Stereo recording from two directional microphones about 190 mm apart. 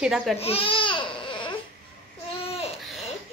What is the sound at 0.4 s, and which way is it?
Baby cry, 30° left (ahead or behind).